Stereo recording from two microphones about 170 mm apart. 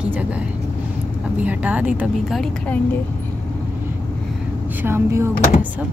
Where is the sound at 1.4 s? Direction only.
10° right (ahead or behind).